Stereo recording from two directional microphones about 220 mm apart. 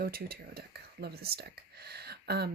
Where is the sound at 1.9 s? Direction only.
45° right (ahead or behind).